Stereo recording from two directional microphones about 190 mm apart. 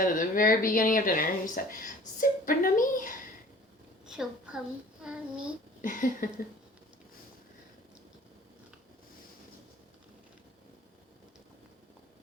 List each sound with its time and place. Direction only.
0.0 s speech: 45° left (ahead or behind)
4.1 s a woman's voice: 5° right (ahead or behind)
5.8 s speech: 45° left (ahead or behind)